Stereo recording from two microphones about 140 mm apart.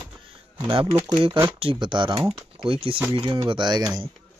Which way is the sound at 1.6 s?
35° right (ahead or behind).